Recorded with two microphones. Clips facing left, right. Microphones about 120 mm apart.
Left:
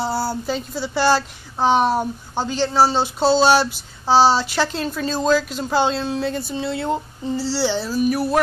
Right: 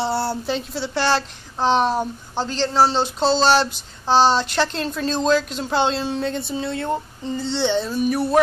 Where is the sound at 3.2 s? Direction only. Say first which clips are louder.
Left 2 dB; 10° left (ahead or behind).